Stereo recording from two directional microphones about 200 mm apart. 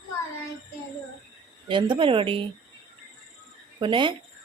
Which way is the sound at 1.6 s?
25° right (ahead or behind).